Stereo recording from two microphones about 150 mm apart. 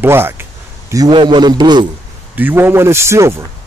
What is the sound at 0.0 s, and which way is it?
A man's voice, 15° right (ahead or behind).